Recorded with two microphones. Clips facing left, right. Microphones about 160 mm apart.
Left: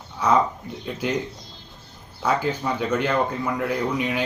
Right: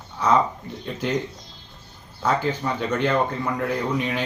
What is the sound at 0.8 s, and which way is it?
Speech, 5° left (ahead or behind).